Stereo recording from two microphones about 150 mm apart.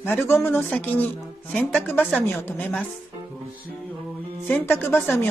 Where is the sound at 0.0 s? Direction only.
15° left (ahead or behind).